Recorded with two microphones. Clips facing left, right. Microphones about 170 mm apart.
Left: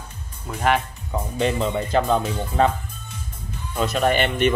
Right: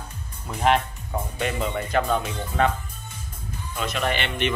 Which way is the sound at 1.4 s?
30° left (ahead or behind).